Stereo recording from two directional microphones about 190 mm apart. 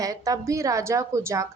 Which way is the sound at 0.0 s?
20° right (ahead or behind).